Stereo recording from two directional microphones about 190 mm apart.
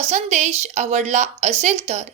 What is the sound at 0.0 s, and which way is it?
A woman's voice, 35° right (ahead or behind).